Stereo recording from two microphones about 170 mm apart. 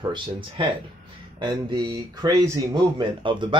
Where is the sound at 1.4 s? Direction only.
25° right (ahead or behind).